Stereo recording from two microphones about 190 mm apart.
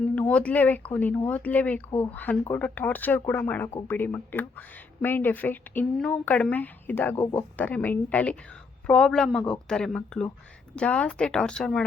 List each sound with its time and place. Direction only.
0.2 s speech: 5° left (ahead or behind)